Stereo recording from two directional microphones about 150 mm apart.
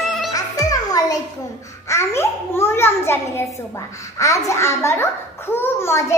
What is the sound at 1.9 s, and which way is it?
A child's voice, 15° left (ahead or behind).